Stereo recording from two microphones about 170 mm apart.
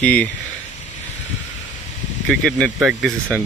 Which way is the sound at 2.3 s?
Centre (ahead or behind).